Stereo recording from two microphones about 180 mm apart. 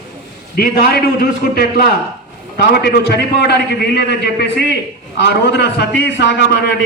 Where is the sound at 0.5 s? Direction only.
55° left (ahead or behind).